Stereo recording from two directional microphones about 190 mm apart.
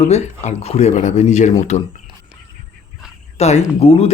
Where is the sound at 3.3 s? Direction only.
35° left (ahead or behind).